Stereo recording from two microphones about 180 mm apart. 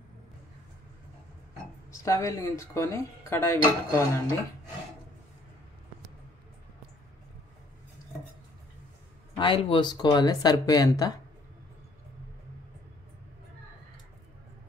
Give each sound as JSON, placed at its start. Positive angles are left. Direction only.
{"t": 1.9, "sound": "speech", "side_deg": 20}
{"t": 9.4, "sound": "speech", "side_deg": 30}